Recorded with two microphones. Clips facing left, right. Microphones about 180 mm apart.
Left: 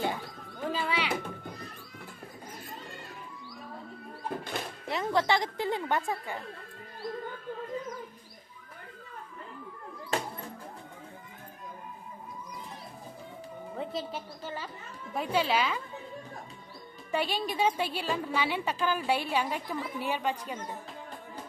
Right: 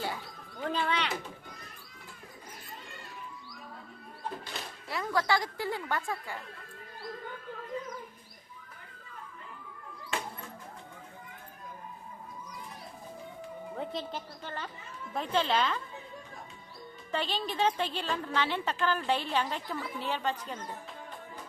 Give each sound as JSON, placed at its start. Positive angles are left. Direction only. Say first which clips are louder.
{"t": 0.6, "sound": "bird", "louder": "even", "side_deg": 5}
{"t": 4.5, "sound": "a sound", "louder": "left 6 dB", "side_deg": 55}
{"t": 4.9, "sound": "a woman's voice", "louder": "left 2 dB", "side_deg": 25}
{"t": 10.1, "sound": "a sound", "louder": "left 4 dB", "side_deg": 40}
{"t": 13.7, "sound": "a woman's voice", "louder": "left 2 dB", "side_deg": 5}
{"t": 17.1, "sound": "a woman's voice", "louder": "left 3 dB", "side_deg": 10}